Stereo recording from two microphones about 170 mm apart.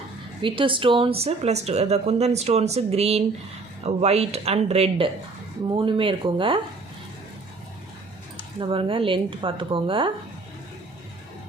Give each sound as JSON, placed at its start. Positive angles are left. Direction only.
{"t": 0.4, "sound": "speech", "side_deg": -30}
{"t": 8.5, "sound": "speech", "side_deg": -30}